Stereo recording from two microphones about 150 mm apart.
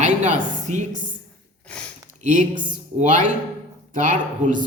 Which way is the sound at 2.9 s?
60° right (ahead or behind).